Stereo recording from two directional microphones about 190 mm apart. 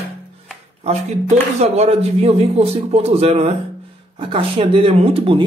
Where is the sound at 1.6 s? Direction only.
35° right (ahead or behind).